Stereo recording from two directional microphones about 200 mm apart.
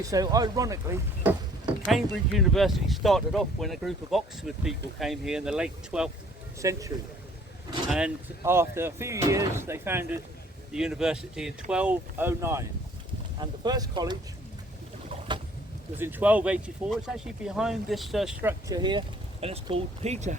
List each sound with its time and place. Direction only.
0.0 s speech: 15° right (ahead or behind)
1.9 s speech: centre (ahead or behind)
6.6 s speech: 15° right (ahead or behind)
7.9 s speech: 5° right (ahead or behind); by 14.2 s 20° right (ahead or behind)
16.0 s speech: 10° right (ahead or behind)
18.7 s speech: 20° right (ahead or behind)